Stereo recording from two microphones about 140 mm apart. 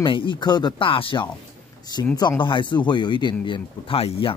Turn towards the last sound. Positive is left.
turn(degrees=40)  # may be behind; listen again after turning